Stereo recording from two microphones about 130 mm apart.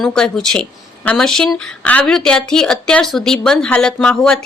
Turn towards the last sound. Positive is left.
turn(degrees=5)  # may be behind; listen again after turning